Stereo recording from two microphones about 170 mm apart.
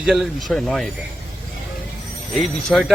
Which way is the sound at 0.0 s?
Centre (ahead or behind).